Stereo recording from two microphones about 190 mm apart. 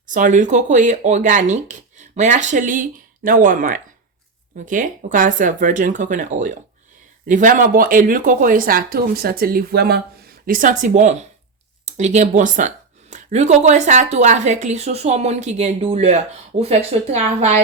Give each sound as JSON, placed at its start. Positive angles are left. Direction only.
{"t": 0.1, "sound": "speech", "side_deg": -40}
{"t": 10.4, "sound": "speech", "side_deg": -45}